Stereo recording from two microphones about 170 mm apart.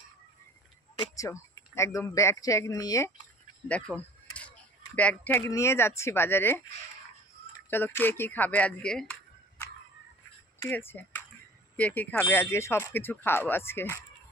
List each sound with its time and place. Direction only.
0.9 s speech: 20° left (ahead or behind)
3.6 s speech: 10° left (ahead or behind)
7.7 s speech: 10° left (ahead or behind)